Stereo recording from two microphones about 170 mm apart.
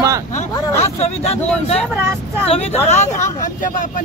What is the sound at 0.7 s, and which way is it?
Speech, 40° left (ahead or behind).